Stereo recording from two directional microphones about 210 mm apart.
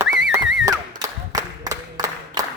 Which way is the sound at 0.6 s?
15° right (ahead or behind).